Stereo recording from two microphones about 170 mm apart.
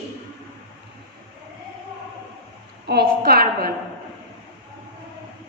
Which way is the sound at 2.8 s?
70° right (ahead or behind).